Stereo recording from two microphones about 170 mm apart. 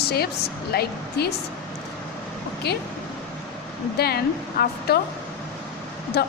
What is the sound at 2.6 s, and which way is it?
Speech, 70° left (ahead or behind).